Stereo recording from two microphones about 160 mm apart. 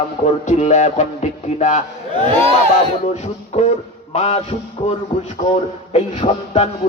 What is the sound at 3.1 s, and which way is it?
Music, 45° left (ahead or behind).